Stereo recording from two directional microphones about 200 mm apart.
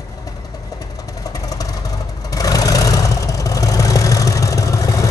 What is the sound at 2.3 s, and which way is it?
Vehicle, 15° left (ahead or behind).